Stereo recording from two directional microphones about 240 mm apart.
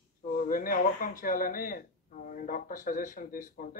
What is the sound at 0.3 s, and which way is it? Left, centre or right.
Speech, left.